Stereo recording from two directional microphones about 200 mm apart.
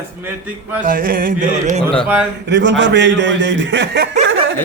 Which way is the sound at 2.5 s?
65° right (ahead or behind).